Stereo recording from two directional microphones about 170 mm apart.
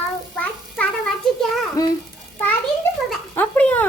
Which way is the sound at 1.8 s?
20° left (ahead or behind).